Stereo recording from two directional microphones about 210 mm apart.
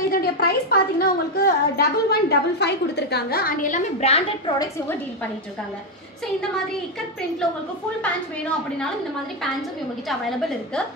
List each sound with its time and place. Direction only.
0.1 s a woman's voice: 45° left (ahead or behind); by 4.6 s 30° left (ahead or behind)
4.6 s a woman's voice: 10° left (ahead or behind)
8.0 s a woman's voice: 5° left (ahead or behind)